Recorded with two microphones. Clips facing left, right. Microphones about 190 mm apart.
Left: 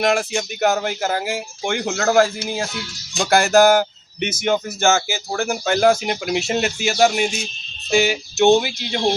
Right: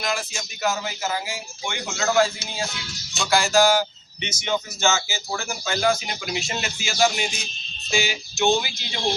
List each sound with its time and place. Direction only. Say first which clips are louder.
0.0 s speech: left 9 dB; 70° left (ahead or behind)